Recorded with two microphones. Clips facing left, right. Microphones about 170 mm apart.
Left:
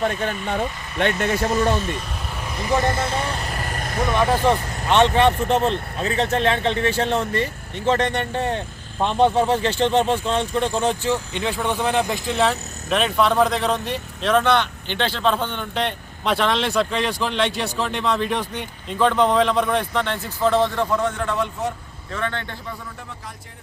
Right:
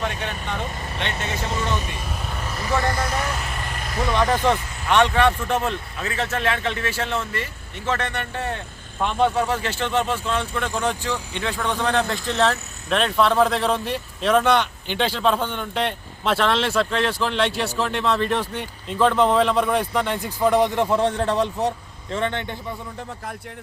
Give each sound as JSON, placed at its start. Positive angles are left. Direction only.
{"t": 0.0, "sound": "speech", "side_deg": 40}
{"t": 2.6, "sound": "speech", "side_deg": 20}
{"t": 4.2, "sound": "speech", "side_deg": 5}
{"t": 4.9, "sound": "speech", "side_deg": 20}
{"t": 21.0, "sound": "a man's voice", "side_deg": -30}
{"t": 22.1, "sound": "a man's voice", "side_deg": -20}